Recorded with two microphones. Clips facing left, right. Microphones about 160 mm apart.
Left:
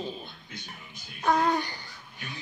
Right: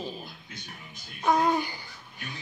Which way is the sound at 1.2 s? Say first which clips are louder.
Right 1 dB; 10° right (ahead or behind).